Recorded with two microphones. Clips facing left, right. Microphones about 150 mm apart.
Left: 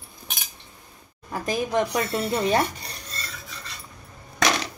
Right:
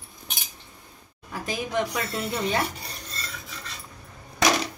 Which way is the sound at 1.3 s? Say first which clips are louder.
Left 5 dB; 45° left (ahead or behind).